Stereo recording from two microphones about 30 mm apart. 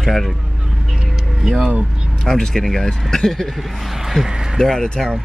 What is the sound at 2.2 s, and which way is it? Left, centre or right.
Speech, centre.